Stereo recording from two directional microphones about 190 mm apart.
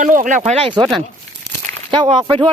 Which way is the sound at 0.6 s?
30° right (ahead or behind).